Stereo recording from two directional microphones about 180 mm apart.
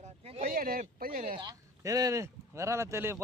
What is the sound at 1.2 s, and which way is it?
Speech, 25° right (ahead or behind).